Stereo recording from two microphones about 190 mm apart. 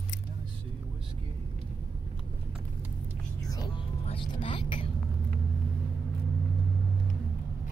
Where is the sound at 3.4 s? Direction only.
20° left (ahead or behind).